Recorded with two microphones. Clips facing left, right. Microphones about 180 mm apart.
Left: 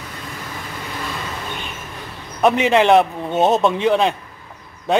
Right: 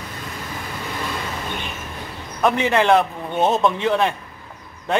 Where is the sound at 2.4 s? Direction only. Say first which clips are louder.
Left 3 dB; 20° left (ahead or behind).